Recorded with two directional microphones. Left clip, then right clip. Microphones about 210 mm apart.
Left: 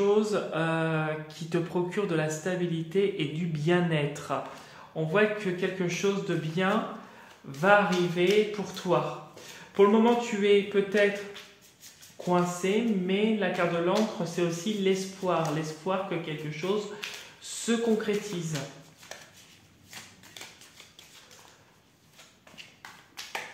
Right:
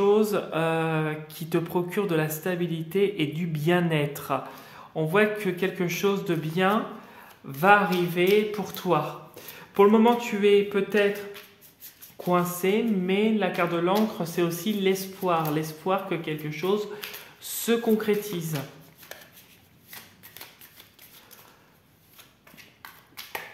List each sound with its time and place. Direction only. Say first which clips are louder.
0.0 s a sound: right 3 dB; 35° right (ahead or behind)
4.9 s speech: right 3 dB; 45° right (ahead or behind)
12.3 s speech: right 3 dB; 45° right (ahead or behind)